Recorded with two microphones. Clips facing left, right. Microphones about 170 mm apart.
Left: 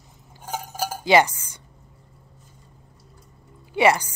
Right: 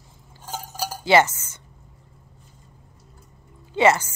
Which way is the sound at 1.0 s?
15° left (ahead or behind).